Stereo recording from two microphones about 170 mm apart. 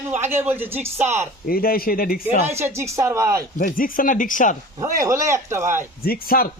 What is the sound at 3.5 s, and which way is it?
Speech, 55° left (ahead or behind).